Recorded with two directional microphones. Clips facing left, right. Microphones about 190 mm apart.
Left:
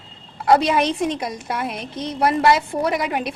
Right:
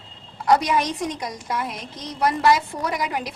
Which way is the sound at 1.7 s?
60° left (ahead or behind).